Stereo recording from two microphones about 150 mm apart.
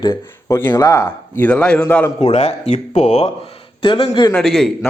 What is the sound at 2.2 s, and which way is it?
Speech, 45° left (ahead or behind).